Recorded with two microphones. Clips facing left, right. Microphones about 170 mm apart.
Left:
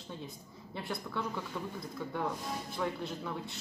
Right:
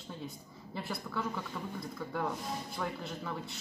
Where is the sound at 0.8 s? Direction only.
Centre (ahead or behind).